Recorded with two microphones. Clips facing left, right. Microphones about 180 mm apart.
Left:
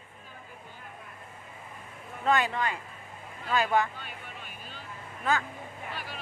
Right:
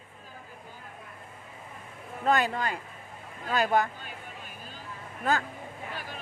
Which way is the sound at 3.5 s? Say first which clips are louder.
Right 1 dB; 40° right (ahead or behind).